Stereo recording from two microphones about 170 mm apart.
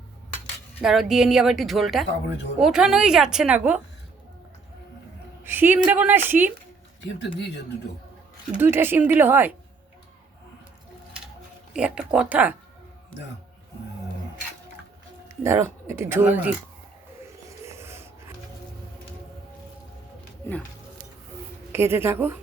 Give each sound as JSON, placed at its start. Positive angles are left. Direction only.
{"t": 0.8, "sound": "a woman's voice", "side_deg": 0}
{"t": 5.4, "sound": "a woman's voice", "side_deg": -10}
{"t": 7.0, "sound": "speech", "side_deg": 90}
{"t": 8.5, "sound": "a woman's voice", "side_deg": -15}
{"t": 11.7, "sound": "a woman's voice", "side_deg": -5}
{"t": 15.4, "sound": "a woman's voice", "side_deg": -15}
{"t": 17.4, "sound": "a sound", "side_deg": -15}
{"t": 21.7, "sound": "a woman's voice", "side_deg": -15}